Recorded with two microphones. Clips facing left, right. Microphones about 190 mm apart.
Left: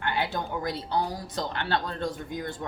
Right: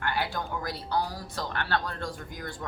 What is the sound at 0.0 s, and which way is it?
A woman's voice, 20° left (ahead or behind).